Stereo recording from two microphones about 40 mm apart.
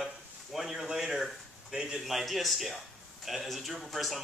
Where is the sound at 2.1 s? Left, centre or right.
Centre.